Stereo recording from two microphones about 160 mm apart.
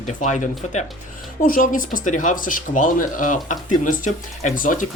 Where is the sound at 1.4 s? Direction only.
60° left (ahead or behind).